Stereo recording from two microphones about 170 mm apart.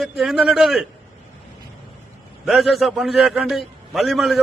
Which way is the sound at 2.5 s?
Centre (ahead or behind).